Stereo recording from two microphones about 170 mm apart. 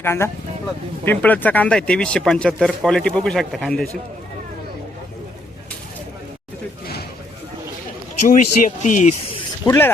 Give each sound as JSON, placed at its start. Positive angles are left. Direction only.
{"t": 0.0, "sound": "mechanisms", "side_deg": 15}
{"t": 1.0, "sound": "speech", "side_deg": 10}
{"t": 8.2, "sound": "speech", "side_deg": 50}
{"t": 9.6, "sound": "mechanisms", "side_deg": 15}